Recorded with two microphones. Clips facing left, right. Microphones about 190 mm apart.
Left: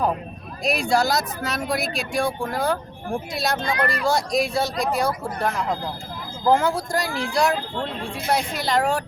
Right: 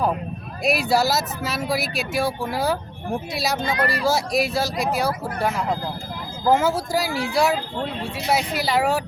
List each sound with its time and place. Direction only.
0.6 s speech: 5° right (ahead or behind)